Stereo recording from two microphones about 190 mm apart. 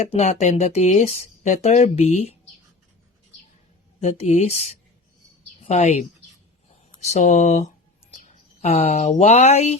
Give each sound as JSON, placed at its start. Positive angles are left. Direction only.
{"t": 0.1, "sound": "speech", "side_deg": 35}
{"t": 4.0, "sound": "a woman's voice", "side_deg": 35}